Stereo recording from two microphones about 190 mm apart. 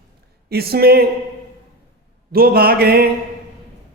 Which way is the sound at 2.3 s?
55° right (ahead or behind).